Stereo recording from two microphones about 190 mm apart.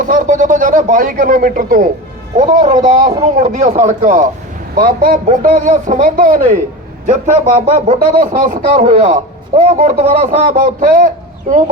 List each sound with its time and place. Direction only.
0.0 s a man's voice: 45° right (ahead or behind)
4.7 s a man's voice: 50° right (ahead or behind)
7.9 s a man's voice: 40° right (ahead or behind)